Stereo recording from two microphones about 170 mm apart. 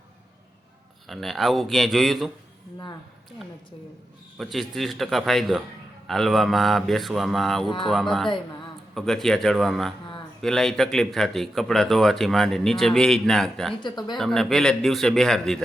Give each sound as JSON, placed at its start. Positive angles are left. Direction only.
{"t": 1.0, "sound": "speech", "side_deg": 0}
{"t": 4.4, "sound": "speech", "side_deg": 0}
{"t": 13.8, "sound": "speech", "side_deg": 25}
{"t": 14.2, "sound": "speech", "side_deg": 0}